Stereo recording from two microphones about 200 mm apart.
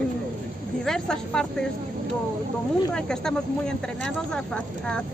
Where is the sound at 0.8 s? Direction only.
5° left (ahead or behind).